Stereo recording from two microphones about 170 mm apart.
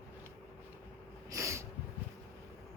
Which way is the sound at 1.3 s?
15° right (ahead or behind).